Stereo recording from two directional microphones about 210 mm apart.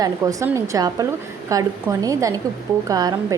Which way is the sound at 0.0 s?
15° right (ahead or behind).